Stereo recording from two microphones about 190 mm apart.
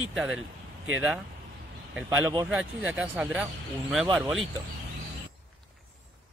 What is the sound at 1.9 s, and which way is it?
Speech, 5° right (ahead or behind).